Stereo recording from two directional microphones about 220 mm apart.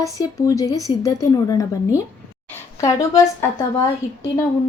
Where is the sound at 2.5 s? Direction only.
10° left (ahead or behind).